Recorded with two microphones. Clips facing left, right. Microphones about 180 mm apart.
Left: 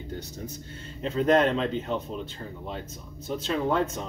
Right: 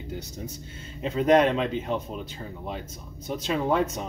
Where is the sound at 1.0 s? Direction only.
10° right (ahead or behind).